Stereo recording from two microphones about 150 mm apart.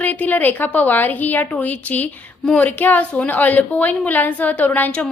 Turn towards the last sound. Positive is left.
turn(degrees=10)  # may be behind; listen again after turning